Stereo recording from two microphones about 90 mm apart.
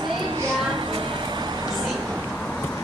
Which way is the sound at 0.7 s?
70° right (ahead or behind).